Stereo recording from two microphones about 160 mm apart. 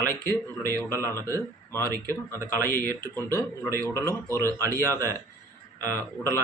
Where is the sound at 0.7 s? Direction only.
20° right (ahead or behind).